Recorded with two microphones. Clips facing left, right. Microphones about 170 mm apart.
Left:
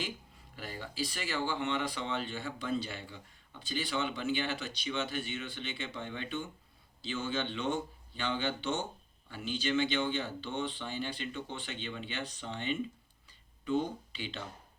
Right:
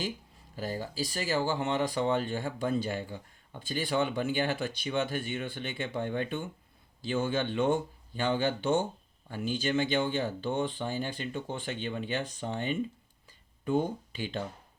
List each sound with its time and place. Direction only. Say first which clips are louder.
0.5 s speech: right 7 dB; 40° right (ahead or behind)